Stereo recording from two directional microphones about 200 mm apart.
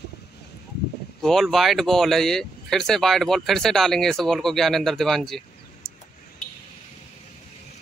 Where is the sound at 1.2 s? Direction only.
Centre (ahead or behind).